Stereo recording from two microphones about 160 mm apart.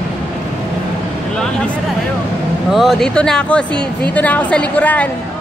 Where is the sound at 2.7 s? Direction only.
Centre (ahead or behind).